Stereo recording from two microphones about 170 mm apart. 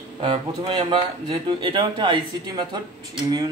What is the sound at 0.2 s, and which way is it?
A man's voice, 30° right (ahead or behind).